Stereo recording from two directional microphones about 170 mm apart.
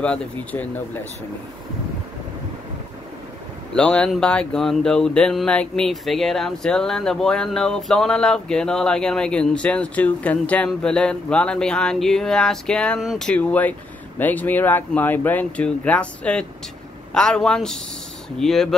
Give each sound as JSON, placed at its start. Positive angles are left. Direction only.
{"t": 0.0, "sound": "speech", "side_deg": 5}
{"t": 3.7, "sound": "speech", "side_deg": 5}